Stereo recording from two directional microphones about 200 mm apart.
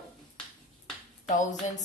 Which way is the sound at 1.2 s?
40° left (ahead or behind).